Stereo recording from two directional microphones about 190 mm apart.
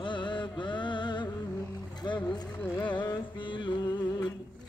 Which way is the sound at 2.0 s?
20° left (ahead or behind).